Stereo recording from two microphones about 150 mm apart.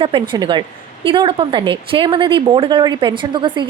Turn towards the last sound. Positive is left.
turn(degrees=-30)  # may be behind; listen again after turning